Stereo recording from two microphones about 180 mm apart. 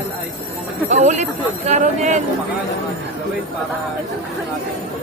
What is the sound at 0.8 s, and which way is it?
Speech, 40° right (ahead or behind).